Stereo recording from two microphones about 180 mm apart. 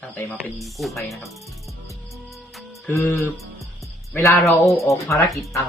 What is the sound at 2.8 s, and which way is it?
Speech, 10° left (ahead or behind).